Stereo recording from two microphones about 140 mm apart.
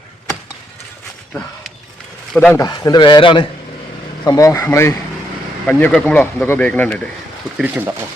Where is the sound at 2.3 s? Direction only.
10° left (ahead or behind).